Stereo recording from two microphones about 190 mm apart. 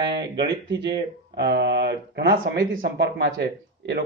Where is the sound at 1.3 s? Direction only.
65° right (ahead or behind).